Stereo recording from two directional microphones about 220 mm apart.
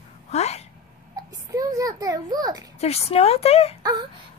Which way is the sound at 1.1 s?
15° right (ahead or behind).